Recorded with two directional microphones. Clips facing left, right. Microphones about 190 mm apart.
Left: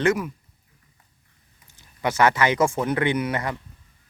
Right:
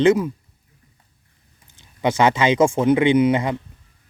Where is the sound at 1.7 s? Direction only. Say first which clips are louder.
Right 3 dB; 25° right (ahead or behind).